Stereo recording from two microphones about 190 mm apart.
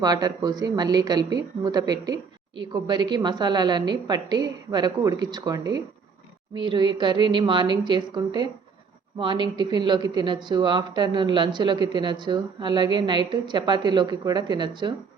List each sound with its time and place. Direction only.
0.0 s speech: 20° right (ahead or behind)